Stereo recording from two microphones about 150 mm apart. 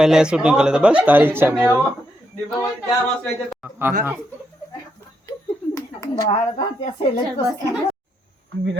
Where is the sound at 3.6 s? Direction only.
15° right (ahead or behind).